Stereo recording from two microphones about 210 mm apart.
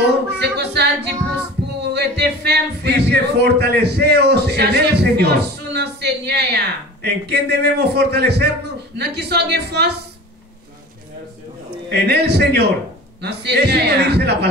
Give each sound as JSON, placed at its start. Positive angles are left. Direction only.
{"t": 0.0, "sound": "music", "side_deg": -50}
{"t": 11.9, "sound": "a man's voice", "side_deg": -50}